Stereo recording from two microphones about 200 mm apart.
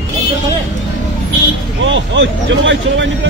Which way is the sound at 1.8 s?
70° right (ahead or behind).